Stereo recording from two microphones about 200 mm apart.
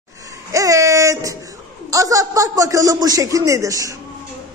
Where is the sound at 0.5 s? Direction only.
15° right (ahead or behind).